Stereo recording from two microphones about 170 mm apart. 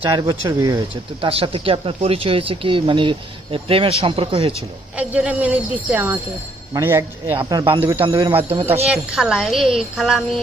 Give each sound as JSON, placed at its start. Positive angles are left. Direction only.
{"t": 0.1, "sound": "speech", "side_deg": -20}
{"t": 1.2, "sound": "speech", "side_deg": -35}
{"t": 4.9, "sound": "a woman's voice", "side_deg": -5}
{"t": 7.3, "sound": "speech", "side_deg": -30}
{"t": 7.8, "sound": "a woman's voice", "side_deg": -15}
{"t": 8.0, "sound": "speech", "side_deg": -30}
{"t": 8.9, "sound": "speech", "side_deg": -5}